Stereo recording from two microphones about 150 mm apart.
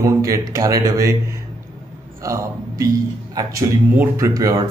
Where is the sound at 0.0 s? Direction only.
20° right (ahead or behind).